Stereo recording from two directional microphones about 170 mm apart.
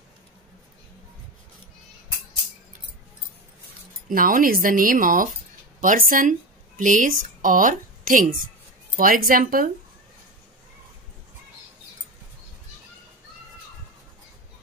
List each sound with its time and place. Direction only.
4.1 s a woman's voice: 55° right (ahead or behind)